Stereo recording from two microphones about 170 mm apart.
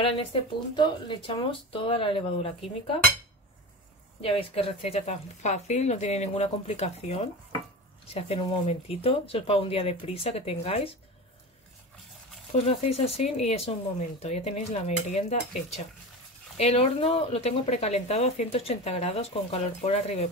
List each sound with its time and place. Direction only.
0.0 s speech: 30° left (ahead or behind)
4.2 s speech: 35° left (ahead or behind)
12.5 s speech: 35° left (ahead or behind)